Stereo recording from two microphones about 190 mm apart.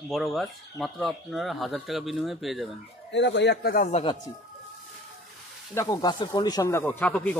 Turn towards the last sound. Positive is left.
turn(degrees=10)  # may be behind; listen again after turning